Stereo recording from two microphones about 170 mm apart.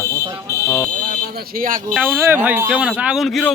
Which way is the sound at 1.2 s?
60° right (ahead or behind).